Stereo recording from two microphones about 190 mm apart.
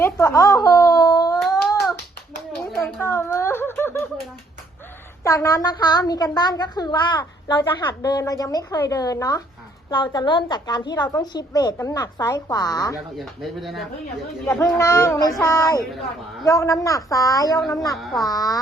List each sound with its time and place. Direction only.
0.0 s speech: 15° left (ahead or behind)
1.4 s a sound: centre (ahead or behind)
2.7 s a sound: 15° left (ahead or behind)
5.2 s a woman's voice: 15° left (ahead or behind)
13.1 s speech: centre (ahead or behind)
14.4 s a woman's voice: 15° left (ahead or behind)
17.9 s speech: centre (ahead or behind)
18.2 s a woman's voice: 20° left (ahead or behind)